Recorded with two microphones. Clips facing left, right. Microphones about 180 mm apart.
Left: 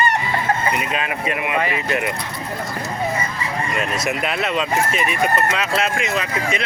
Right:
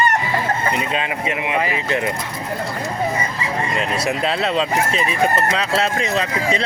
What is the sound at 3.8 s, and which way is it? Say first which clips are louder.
Speech: right 1 dB; 30° right (ahead or behind).